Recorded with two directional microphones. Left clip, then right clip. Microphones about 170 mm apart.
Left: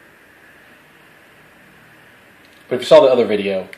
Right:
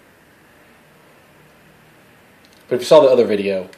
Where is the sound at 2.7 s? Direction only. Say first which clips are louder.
Left 1 dB; 5° right (ahead or behind).